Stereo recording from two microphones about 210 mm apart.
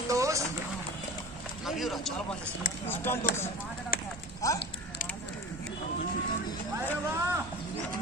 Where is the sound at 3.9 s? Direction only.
45° left (ahead or behind).